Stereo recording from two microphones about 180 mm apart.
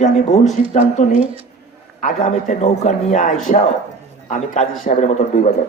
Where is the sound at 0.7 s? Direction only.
40° left (ahead or behind).